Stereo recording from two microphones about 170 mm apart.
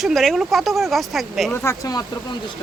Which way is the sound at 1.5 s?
15° left (ahead or behind).